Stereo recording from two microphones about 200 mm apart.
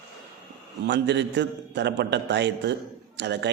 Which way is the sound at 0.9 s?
60° right (ahead or behind).